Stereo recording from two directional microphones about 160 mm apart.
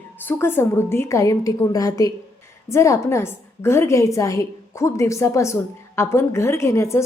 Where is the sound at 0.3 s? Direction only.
15° left (ahead or behind).